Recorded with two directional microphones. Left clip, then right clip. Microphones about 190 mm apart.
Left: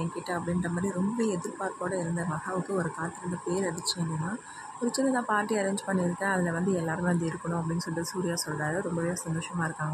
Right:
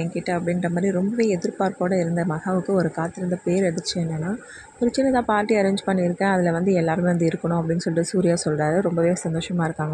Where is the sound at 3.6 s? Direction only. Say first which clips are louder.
Right 7 dB; 20° right (ahead or behind).